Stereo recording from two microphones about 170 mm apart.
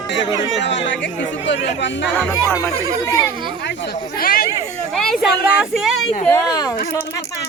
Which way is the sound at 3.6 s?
85° left.